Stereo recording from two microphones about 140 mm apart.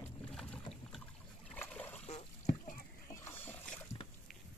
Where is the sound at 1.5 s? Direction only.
10° left (ahead or behind).